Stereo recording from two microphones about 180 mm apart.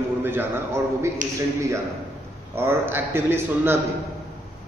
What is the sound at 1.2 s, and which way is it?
Speech, 45° right (ahead or behind).